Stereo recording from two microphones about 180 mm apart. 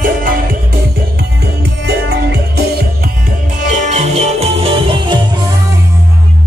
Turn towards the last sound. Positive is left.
turn(degrees=-25)  # may be behind; listen again after turning